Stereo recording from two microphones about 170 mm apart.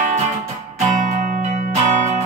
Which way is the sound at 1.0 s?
45° right (ahead or behind).